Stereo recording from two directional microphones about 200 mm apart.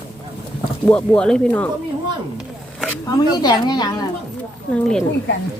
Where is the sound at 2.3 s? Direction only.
Centre (ahead or behind).